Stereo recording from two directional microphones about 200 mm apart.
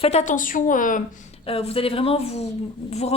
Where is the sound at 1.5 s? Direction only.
30° left (ahead or behind).